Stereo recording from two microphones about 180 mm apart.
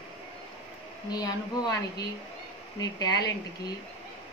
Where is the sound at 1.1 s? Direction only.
20° left (ahead or behind).